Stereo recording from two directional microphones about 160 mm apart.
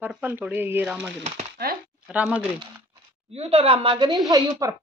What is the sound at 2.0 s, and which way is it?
Speech, 5° right (ahead or behind).